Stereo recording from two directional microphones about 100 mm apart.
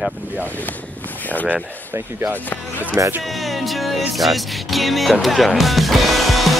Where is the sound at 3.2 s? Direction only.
Centre (ahead or behind).